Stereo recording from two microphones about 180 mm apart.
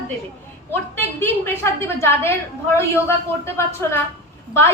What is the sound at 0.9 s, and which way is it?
A woman's voice, 10° left (ahead or behind).